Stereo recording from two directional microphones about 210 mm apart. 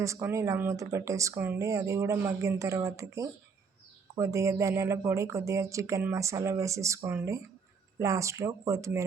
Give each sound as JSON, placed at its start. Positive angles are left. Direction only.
{"t": 0.0, "sound": "speech", "side_deg": -15}